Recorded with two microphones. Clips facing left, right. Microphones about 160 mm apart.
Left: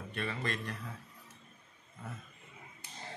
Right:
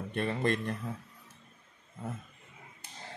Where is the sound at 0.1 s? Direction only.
50° right (ahead or behind).